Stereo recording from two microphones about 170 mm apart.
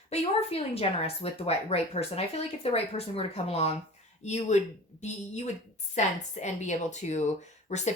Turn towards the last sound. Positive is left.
turn(degrees=40)  # may be behind; listen again after turning